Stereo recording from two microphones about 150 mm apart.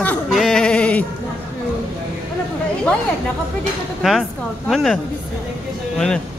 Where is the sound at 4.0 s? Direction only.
Centre (ahead or behind).